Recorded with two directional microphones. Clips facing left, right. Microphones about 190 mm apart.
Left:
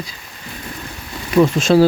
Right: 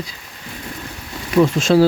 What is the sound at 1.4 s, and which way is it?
Speech, 20° left (ahead or behind).